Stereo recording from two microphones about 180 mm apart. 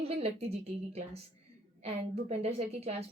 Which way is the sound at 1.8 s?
35° right (ahead or behind).